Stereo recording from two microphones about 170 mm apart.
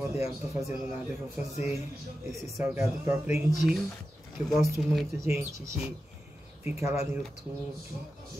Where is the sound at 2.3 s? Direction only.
20° right (ahead or behind).